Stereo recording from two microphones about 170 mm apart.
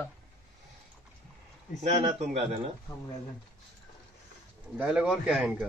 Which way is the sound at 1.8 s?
35° right (ahead or behind).